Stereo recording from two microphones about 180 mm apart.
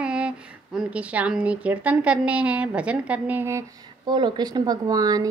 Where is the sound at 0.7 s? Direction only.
5° right (ahead or behind).